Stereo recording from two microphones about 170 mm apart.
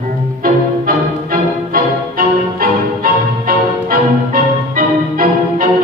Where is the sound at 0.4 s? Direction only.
55° right (ahead or behind).